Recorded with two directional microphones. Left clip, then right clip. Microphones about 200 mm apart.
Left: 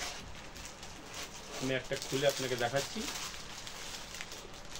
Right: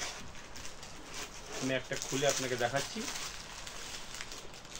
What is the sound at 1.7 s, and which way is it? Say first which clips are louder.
Speech: even; centre (ahead or behind).